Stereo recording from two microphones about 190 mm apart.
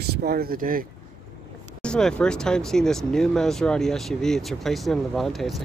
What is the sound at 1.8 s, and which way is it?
Speech, 5° left (ahead or behind).